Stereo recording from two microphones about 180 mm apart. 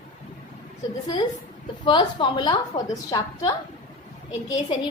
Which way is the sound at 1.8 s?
25° left (ahead or behind).